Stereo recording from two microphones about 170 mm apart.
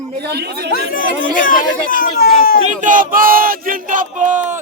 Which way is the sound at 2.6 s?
50° right (ahead or behind).